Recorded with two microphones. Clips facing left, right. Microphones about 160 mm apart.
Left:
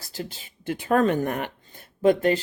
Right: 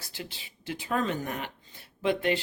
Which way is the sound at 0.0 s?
40° left (ahead or behind).